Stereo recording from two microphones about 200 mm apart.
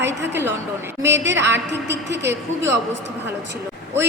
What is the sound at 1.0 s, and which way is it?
A woman's voice, 65° right (ahead or behind).